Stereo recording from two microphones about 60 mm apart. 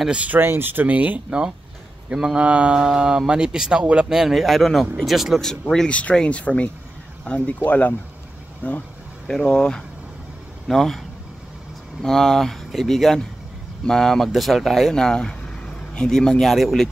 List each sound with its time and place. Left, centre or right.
0.1 s speech: right
0.4 s speech: right
2.1 s speech: centre
5.4 s speech: centre
5.9 s speech: left
9.3 s speech: centre
10.7 s speech: centre
12.0 s speech: centre